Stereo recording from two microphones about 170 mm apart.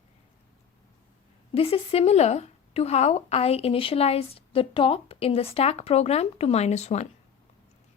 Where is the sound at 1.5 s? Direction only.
35° left (ahead or behind).